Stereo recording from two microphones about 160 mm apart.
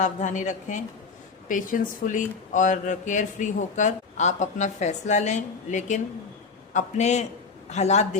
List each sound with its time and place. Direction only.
0.0 s speech: 50° left (ahead or behind)